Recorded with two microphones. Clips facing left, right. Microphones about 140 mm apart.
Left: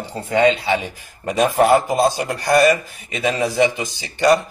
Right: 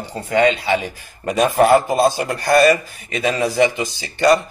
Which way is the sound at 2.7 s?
20° left (ahead or behind).